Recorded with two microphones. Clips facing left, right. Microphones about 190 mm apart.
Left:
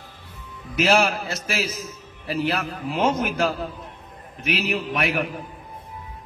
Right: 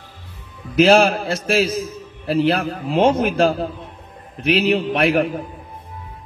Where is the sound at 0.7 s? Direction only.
30° right (ahead or behind).